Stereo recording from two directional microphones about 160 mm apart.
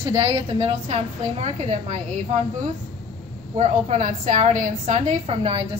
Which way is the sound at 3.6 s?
50° right (ahead or behind).